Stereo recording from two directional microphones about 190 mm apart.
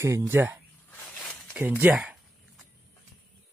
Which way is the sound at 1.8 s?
5° right (ahead or behind).